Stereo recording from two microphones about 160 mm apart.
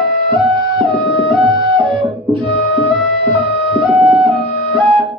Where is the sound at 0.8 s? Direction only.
30° right (ahead or behind).